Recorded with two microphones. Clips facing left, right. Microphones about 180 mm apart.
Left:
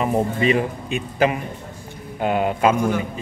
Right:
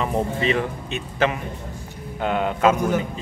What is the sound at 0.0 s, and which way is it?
Speech, 10° left (ahead or behind).